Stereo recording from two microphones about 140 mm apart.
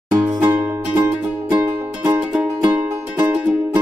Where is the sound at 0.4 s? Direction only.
15° right (ahead or behind).